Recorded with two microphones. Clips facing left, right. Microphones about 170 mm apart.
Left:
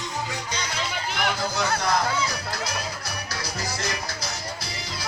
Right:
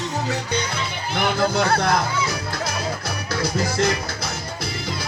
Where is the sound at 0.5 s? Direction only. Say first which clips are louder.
Right 7 dB; 60° right (ahead or behind).